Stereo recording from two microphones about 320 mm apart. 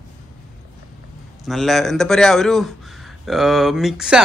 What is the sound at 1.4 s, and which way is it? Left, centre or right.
A man's voice, centre.